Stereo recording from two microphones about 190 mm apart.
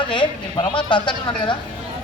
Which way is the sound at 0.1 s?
25° left (ahead or behind).